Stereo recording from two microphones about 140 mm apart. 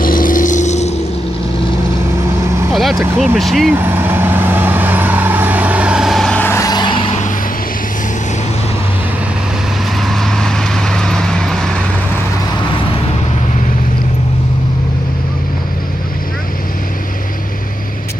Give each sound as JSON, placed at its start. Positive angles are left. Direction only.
{"t": 0.0, "sound": "vehicle", "side_deg": 80}
{"t": 2.7, "sound": "vehicle", "side_deg": 0}
{"t": 3.3, "sound": "speech", "side_deg": 0}
{"t": 3.7, "sound": "vehicle", "side_deg": -15}
{"t": 6.4, "sound": "vehicle", "side_deg": 20}
{"t": 9.9, "sound": "vehicle", "side_deg": 0}